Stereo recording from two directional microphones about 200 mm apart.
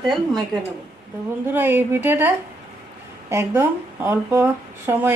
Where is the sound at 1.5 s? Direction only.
10° right (ahead or behind).